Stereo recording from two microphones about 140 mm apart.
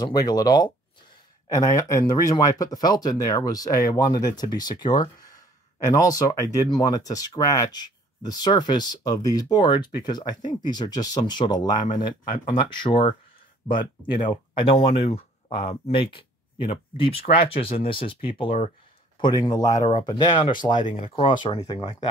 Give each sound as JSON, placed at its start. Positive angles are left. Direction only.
{"t": 0.0, "sound": "speech", "side_deg": 30}
{"t": 13.6, "sound": "speech", "side_deg": -10}
{"t": 14.2, "sound": "speech", "side_deg": 40}
{"t": 20.7, "sound": "speech", "side_deg": 65}
{"t": 21.2, "sound": "speech", "side_deg": 35}